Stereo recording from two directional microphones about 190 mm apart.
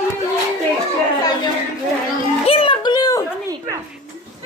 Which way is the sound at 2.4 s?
30° left (ahead or behind).